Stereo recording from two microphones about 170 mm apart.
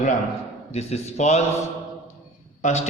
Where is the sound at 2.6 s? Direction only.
40° left (ahead or behind).